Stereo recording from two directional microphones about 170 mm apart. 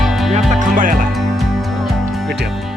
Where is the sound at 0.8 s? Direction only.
50° right (ahead or behind).